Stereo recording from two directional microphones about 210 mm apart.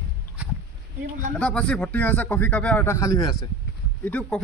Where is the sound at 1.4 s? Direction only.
5° left (ahead or behind).